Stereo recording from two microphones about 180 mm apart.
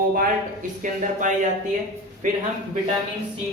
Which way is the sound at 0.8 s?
45° right (ahead or behind).